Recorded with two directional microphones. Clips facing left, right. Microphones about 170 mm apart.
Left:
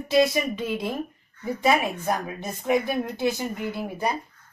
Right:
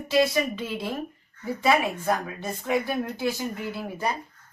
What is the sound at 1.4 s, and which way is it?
Speech, 15° left (ahead or behind).